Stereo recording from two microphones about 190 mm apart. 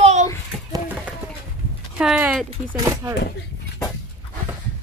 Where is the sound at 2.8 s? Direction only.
15° right (ahead or behind).